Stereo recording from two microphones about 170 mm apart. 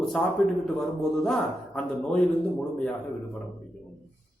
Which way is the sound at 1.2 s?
5° left (ahead or behind).